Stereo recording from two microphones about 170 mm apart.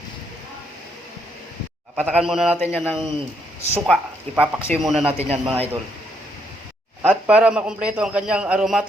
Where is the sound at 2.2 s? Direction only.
5° right (ahead or behind).